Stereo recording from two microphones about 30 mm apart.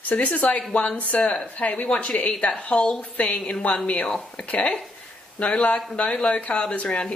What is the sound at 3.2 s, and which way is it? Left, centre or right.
A woman's voice, left.